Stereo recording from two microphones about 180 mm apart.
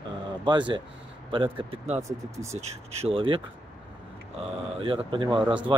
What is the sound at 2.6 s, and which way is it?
Speech, 35° right (ahead or behind).